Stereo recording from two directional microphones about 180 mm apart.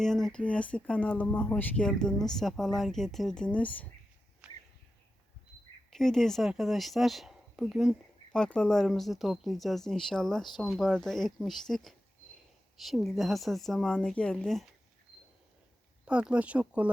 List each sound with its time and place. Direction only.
0.0 s speech: centre (ahead or behind)
5.9 s speech: centre (ahead or behind)
16.0 s speech: 5° right (ahead or behind)